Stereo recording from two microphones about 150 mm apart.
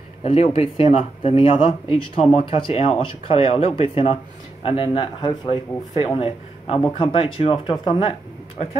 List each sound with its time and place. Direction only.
0.2 s speech: 40° left (ahead or behind)